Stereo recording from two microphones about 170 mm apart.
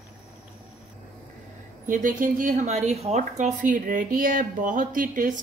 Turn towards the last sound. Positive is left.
turn(degrees=-50)  # may be behind; listen again after turning